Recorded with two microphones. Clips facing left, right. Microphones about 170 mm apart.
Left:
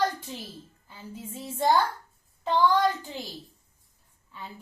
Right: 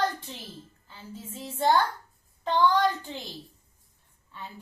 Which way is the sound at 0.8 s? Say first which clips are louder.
Left 1 dB; 15° left (ahead or behind).